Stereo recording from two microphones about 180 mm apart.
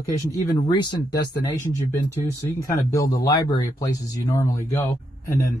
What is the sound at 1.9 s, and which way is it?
Speech, 15° left (ahead or behind).